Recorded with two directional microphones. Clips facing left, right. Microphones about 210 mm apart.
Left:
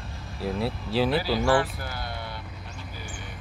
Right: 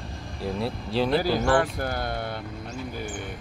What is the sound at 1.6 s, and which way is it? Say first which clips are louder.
Speech: right 3 dB; 50° right (ahead or behind).